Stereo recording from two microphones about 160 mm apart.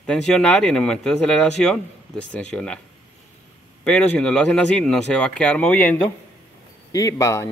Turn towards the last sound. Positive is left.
turn(degrees=20)  # may be behind; listen again after turning